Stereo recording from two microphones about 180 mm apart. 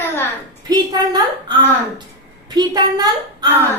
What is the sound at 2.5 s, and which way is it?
Speech, 20° right (ahead or behind).